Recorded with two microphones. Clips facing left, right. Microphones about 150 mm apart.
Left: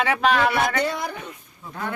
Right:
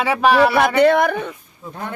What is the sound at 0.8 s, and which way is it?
Speech, 65° right (ahead or behind).